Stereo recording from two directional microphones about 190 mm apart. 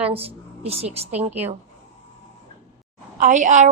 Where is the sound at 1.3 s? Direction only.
10° right (ahead or behind).